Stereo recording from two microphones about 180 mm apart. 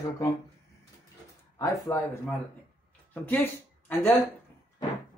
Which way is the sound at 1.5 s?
15° left (ahead or behind).